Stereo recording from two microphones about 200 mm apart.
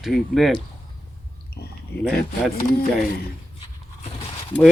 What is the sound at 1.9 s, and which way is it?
Speech, 55° left (ahead or behind).